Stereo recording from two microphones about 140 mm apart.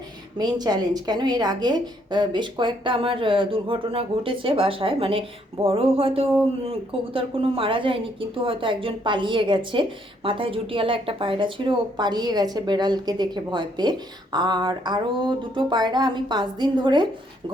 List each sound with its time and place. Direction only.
0.3 s a woman's voice: 30° right (ahead or behind)